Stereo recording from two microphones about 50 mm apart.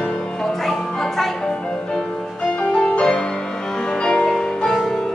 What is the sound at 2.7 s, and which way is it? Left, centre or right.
Music, centre.